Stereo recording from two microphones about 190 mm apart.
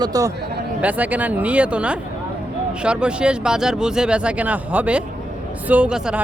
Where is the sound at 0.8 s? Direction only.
10° right (ahead or behind).